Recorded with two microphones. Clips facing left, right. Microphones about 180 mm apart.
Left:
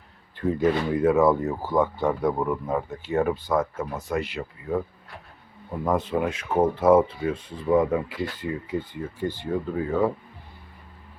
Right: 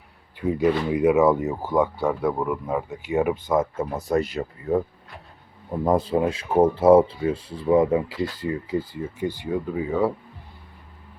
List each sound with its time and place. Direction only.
0.3 s speech: 10° right (ahead or behind)
3.9 s speech: 40° right (ahead or behind)
9.1 s speech: 15° right (ahead or behind)
9.5 s speech: centre (ahead or behind)